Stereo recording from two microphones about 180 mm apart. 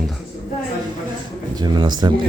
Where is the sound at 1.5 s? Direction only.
25° right (ahead or behind).